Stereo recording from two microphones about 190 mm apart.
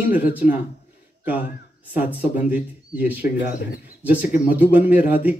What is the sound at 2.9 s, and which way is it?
Speech, 10° right (ahead or behind).